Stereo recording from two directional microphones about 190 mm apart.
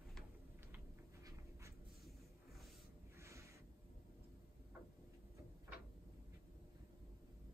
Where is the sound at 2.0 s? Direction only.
Centre (ahead or behind).